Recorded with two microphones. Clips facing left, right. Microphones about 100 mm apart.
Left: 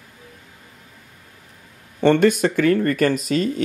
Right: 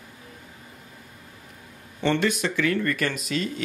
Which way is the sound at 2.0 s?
45° left (ahead or behind).